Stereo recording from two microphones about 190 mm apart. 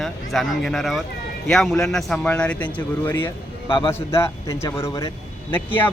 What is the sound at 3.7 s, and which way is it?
Speech, 25° left (ahead or behind).